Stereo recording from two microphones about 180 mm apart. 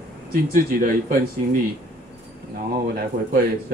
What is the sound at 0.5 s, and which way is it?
Speech, 55° right (ahead or behind).